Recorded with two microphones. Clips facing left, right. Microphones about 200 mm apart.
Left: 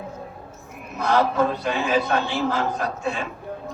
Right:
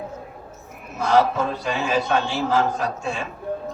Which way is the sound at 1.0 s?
55° left (ahead or behind).